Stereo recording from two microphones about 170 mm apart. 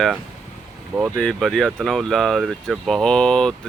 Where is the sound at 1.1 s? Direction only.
5° left (ahead or behind).